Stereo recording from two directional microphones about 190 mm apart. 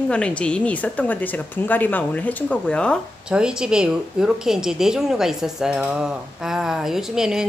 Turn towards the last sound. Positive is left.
turn(degrees=-5)  # may be behind; listen again after turning